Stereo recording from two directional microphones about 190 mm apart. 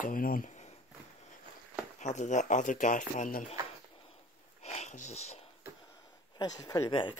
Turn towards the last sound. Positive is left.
turn(degrees=25)  # may be behind; listen again after turning